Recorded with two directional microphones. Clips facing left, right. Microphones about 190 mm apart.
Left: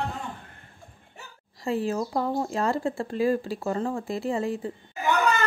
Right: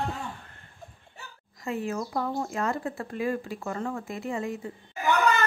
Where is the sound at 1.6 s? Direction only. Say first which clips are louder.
Left 4 dB; 30° left (ahead or behind).